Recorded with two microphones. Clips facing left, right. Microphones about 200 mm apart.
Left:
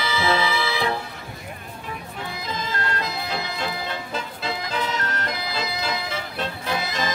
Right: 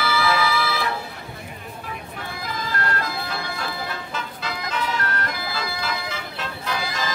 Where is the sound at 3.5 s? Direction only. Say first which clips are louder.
Left 1 dB; 25° left (ahead or behind).